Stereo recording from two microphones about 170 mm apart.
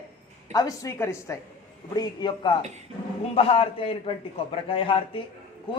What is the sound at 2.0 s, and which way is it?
A woman's voice, 25° left (ahead or behind).